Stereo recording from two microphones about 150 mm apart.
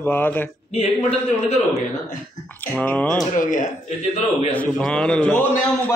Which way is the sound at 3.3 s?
60° left (ahead or behind).